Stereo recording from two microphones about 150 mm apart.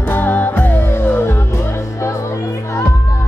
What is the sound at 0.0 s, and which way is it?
Music, 15° left (ahead or behind).